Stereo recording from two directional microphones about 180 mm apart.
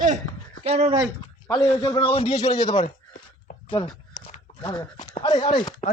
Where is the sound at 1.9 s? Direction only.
30° left (ahead or behind).